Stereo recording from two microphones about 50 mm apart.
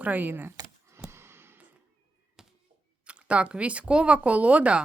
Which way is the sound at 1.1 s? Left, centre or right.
Right.